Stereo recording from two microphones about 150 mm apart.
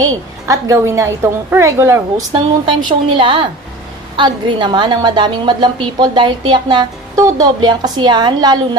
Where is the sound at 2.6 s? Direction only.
35° right (ahead or behind).